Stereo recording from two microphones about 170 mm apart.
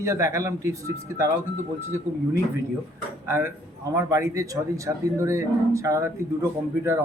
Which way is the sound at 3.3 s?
15° right (ahead or behind).